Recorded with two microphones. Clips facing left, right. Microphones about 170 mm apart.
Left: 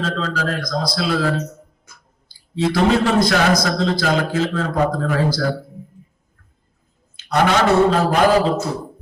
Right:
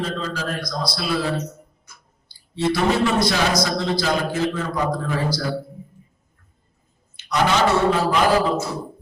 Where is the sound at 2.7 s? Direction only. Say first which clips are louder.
Left 3 dB; 55° left (ahead or behind).